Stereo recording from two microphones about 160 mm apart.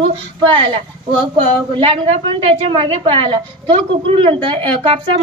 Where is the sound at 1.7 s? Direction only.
35° right (ahead or behind).